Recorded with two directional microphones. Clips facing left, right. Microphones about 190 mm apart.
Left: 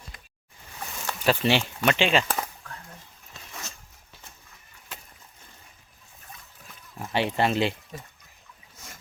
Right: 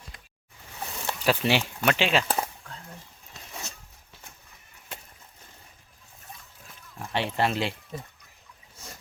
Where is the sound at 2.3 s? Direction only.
30° right (ahead or behind).